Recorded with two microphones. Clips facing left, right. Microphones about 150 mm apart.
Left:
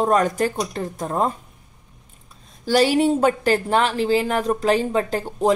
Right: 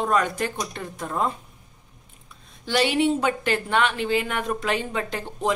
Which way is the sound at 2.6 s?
40° left (ahead or behind).